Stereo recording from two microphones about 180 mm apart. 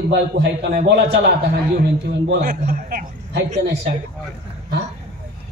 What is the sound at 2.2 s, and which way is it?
A man's voice, 65° right (ahead or behind).